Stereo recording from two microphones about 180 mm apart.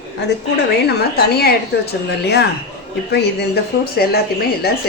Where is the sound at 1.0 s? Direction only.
60° left (ahead or behind).